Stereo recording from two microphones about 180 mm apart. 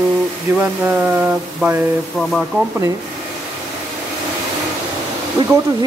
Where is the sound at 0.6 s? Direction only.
10° right (ahead or behind).